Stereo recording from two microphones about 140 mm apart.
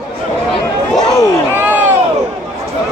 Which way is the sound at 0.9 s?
25° left (ahead or behind).